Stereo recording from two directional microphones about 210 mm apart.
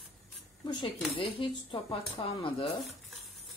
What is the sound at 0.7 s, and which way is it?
Speech, 20° left (ahead or behind).